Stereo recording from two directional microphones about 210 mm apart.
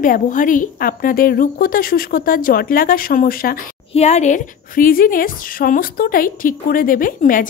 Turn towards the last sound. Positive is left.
turn(degrees=40)  # may be behind; listen again after turning